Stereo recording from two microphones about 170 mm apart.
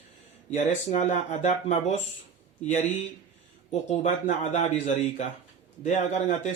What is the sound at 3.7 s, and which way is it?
Speech, 40° left (ahead or behind).